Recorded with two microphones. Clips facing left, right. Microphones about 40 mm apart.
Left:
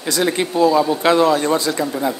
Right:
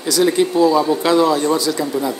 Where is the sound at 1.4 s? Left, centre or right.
Left.